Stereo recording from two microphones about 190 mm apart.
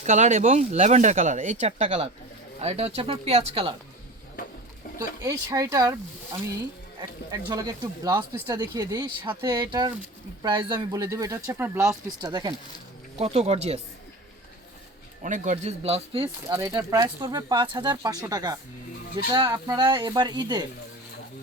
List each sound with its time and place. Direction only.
0.0 s speech: 40° right (ahead or behind)
4.9 s speech: 20° right (ahead or behind)
13.1 s speech: 35° right (ahead or behind)
15.2 s speech: 40° right (ahead or behind)
16.5 s speech: 15° right (ahead or behind)